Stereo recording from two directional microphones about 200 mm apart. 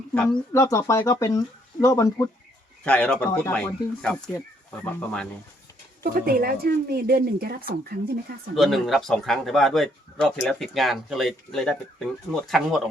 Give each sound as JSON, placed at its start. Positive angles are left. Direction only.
{"t": 0.1, "sound": "a man's voice", "side_deg": 5}
{"t": 2.8, "sound": "speech", "side_deg": 5}
{"t": 6.0, "sound": "speech", "side_deg": -45}
{"t": 8.5, "sound": "a man's voice", "side_deg": 0}